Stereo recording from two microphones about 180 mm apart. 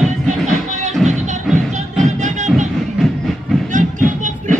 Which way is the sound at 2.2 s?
40° right (ahead or behind).